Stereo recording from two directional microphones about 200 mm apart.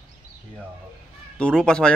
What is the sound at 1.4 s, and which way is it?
Speech, 5° left (ahead or behind).